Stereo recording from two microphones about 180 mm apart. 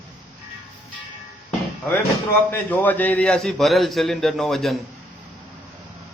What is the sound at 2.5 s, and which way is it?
A man's voice, 10° left (ahead or behind).